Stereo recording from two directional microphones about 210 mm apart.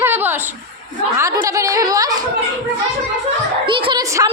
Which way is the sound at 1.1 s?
15° right (ahead or behind).